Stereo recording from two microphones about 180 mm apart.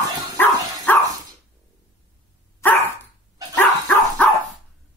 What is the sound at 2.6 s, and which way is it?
Dog, 10° left (ahead or behind).